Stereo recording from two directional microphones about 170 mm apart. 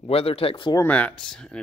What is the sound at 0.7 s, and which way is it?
Speech, 10° left (ahead or behind).